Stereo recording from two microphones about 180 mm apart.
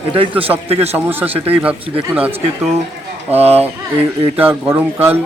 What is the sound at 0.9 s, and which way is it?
Speech, 10° right (ahead or behind).